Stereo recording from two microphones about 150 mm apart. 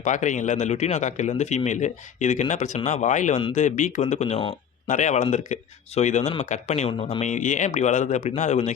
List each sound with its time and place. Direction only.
0.0 s speech: 55° left (ahead or behind)